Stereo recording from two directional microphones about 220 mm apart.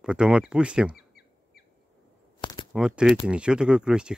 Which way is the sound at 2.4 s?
20° left (ahead or behind).